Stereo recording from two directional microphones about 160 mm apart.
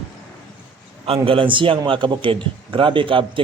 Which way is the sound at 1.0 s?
35° right (ahead or behind).